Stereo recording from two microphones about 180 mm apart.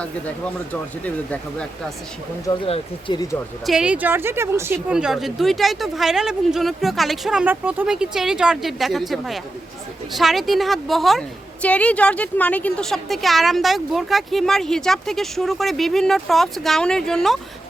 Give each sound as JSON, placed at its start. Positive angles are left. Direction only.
{"t": 1.0, "sound": "speech", "side_deg": 10}
{"t": 2.6, "sound": "speech", "side_deg": 35}
{"t": 3.7, "sound": "a woman's voice", "side_deg": -5}